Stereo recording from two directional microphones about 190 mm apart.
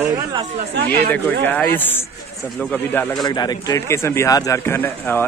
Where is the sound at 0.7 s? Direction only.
55° right (ahead or behind).